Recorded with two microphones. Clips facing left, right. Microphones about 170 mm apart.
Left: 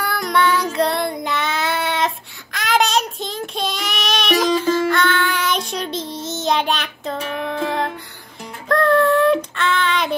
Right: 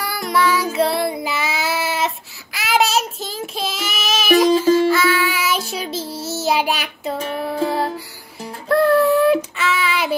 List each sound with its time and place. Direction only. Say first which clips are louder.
0.0 s child singing: even; centre (ahead or behind)
7.2 s music: right 1 dB; 35° right (ahead or behind)
8.6 s child singing: right 1 dB; 5° right (ahead or behind)